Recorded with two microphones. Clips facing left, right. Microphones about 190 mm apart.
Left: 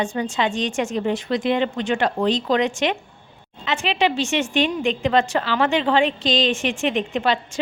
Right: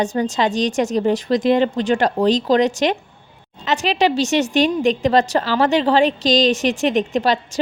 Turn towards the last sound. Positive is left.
turn(degrees=-40)  # may be behind; listen again after turning